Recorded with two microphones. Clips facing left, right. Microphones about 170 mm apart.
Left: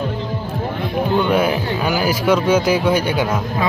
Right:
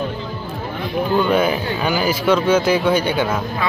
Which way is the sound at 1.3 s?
5° left (ahead or behind).